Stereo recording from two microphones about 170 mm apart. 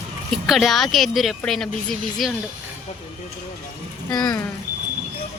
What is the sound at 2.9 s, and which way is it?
Speech, 40° left (ahead or behind).